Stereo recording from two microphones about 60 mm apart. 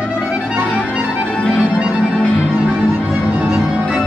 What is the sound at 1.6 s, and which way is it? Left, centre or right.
Music, right.